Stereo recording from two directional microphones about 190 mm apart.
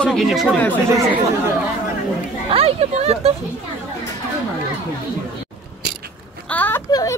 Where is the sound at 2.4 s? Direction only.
30° right (ahead or behind).